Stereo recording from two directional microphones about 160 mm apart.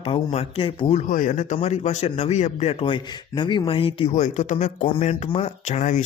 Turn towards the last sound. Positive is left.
turn(degrees=50)  # may be behind; listen again after turning